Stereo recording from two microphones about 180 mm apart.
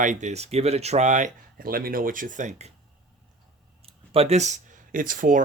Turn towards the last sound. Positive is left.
turn(degrees=-50)  # may be behind; listen again after turning